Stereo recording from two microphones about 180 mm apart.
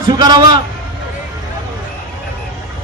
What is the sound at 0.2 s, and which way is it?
Speech, 25° right (ahead or behind).